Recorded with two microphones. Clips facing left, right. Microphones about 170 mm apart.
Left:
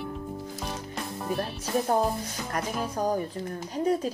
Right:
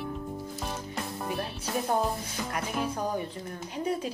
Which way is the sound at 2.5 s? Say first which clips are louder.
Left 1 dB; 40° left (ahead or behind).